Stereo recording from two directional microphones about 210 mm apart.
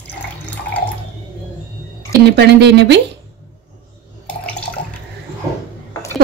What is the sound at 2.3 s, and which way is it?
Speech, 55° right (ahead or behind).